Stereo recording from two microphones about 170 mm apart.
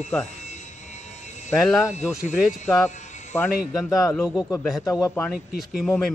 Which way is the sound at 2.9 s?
45° left (ahead or behind).